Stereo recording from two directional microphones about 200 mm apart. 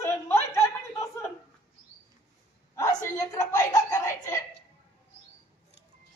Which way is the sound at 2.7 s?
15° left (ahead or behind).